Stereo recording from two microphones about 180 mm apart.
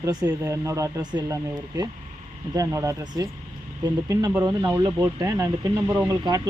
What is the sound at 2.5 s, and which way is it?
Speech, 15° right (ahead or behind).